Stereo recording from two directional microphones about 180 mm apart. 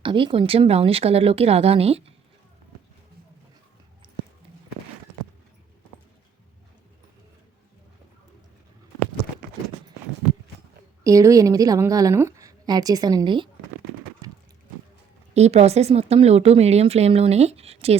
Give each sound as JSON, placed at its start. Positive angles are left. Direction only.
{"t": 0.0, "sound": "speech", "side_deg": -25}
{"t": 11.0, "sound": "a woman's voice", "side_deg": -15}
{"t": 14.2, "sound": "a sound", "side_deg": -20}
{"t": 15.4, "sound": "speech", "side_deg": -35}